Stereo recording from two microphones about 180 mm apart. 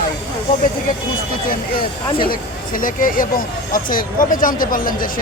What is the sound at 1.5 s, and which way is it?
Speech, 55° left (ahead or behind).